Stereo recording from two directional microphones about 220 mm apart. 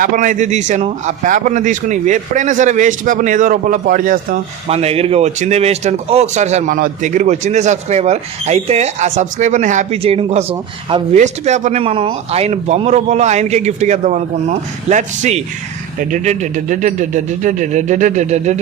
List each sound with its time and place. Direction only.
0.0 s speech: 35° right (ahead or behind)